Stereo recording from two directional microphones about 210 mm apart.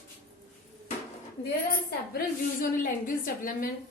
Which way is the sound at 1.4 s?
50° left (ahead or behind).